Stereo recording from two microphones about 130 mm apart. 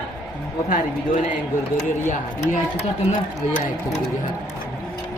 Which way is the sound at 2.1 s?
70° left (ahead or behind).